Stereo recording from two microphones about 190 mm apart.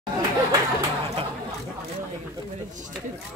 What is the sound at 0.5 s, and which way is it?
Chatter, 20° right (ahead or behind).